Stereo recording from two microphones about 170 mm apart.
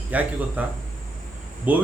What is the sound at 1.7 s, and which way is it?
Speech, 10° right (ahead or behind).